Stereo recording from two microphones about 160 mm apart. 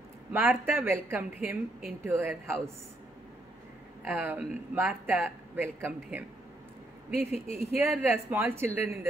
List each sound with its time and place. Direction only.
0.3 s speech: 10° right (ahead or behind)
4.0 s speech: 15° right (ahead or behind)
7.2 s speech: 40° left (ahead or behind)
7.8 s speech: 10° right (ahead or behind)